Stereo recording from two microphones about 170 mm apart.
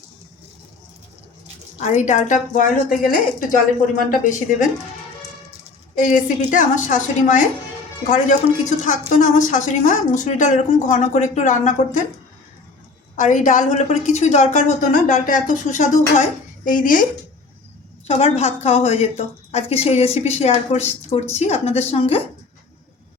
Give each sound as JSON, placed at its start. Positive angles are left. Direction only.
{"t": 1.8, "sound": "a woman's voice", "side_deg": 45}
{"t": 6.0, "sound": "a woman's voice", "side_deg": 50}
{"t": 13.1, "sound": "a woman's voice", "side_deg": 50}
{"t": 18.1, "sound": "a woman's voice", "side_deg": 40}